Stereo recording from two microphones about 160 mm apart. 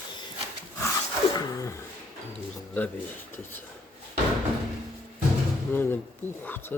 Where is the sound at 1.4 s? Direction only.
20° left (ahead or behind).